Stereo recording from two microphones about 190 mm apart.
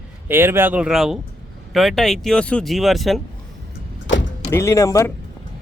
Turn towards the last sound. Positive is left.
turn(degrees=15)  # may be behind; listen again after turning